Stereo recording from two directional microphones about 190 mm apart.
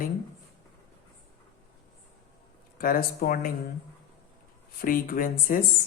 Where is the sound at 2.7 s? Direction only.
50° left (ahead or behind).